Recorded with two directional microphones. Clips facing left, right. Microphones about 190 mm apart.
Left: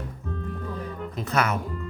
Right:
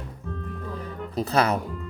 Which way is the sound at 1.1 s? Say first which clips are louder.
Right 4 dB; 35° right (ahead or behind).